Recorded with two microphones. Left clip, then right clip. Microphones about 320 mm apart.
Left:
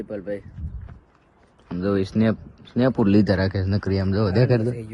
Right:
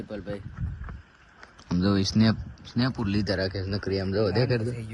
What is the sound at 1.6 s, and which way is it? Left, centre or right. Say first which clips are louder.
Speech: left 3 dB; centre.